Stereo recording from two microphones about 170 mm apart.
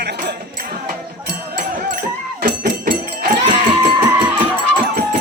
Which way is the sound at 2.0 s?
55° right (ahead or behind).